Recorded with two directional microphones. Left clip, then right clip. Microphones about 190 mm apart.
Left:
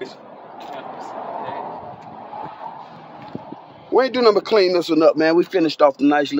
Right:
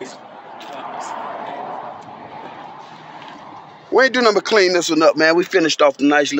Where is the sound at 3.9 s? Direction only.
5° right (ahead or behind).